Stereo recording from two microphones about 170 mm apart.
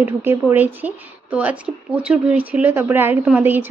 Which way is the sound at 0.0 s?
15° right (ahead or behind).